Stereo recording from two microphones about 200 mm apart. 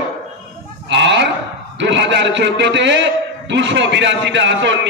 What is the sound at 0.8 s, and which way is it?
Goat, 60° right (ahead or behind).